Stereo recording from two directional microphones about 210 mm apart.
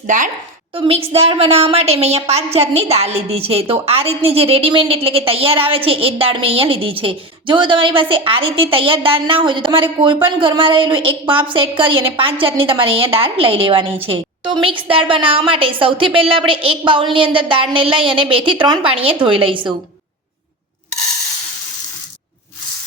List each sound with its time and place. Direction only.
0.7 s a woman's voice: 25° right (ahead or behind)